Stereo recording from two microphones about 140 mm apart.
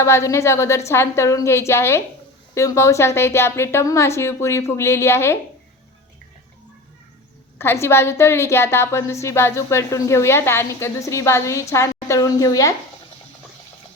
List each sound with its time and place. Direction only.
0.0 s a woman's voice: 20° left (ahead or behind)
7.6 s a woman's voice: 15° left (ahead or behind)